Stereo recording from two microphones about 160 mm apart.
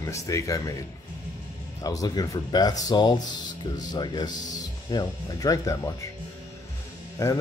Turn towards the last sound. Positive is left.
turn(degrees=20)  # may be behind; listen again after turning